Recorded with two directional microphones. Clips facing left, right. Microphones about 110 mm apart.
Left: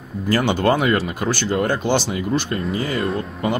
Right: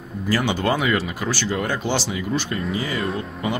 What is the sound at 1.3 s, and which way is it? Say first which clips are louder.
Speech: left 4 dB; 45° left (ahead or behind).